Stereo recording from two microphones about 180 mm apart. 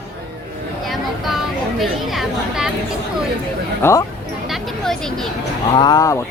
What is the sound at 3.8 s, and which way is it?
Speech, 15° left (ahead or behind).